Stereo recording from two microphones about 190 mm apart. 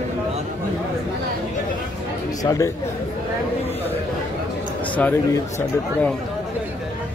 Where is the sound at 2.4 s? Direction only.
15° left (ahead or behind).